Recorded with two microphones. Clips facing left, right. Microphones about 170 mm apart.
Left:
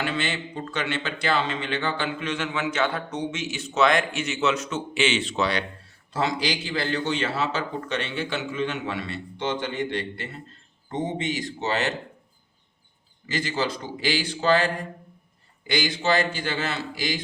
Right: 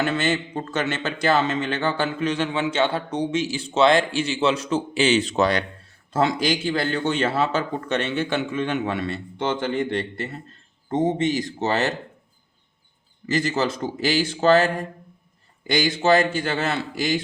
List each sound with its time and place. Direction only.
0.0 s a man's voice: 45° right (ahead or behind)
10.8 s a man's voice: 45° right (ahead or behind)
13.2 s a man's voice: 45° right (ahead or behind)